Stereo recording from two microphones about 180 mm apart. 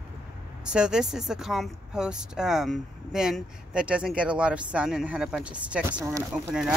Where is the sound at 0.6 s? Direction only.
5° right (ahead or behind).